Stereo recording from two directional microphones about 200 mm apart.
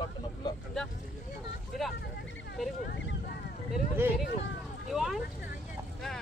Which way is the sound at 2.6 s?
Centre (ahead or behind).